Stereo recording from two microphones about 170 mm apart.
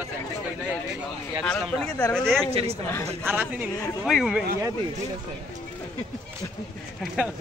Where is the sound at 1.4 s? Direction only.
5° left (ahead or behind).